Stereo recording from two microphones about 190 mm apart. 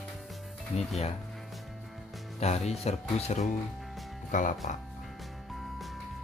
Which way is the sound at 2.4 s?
35° left (ahead or behind).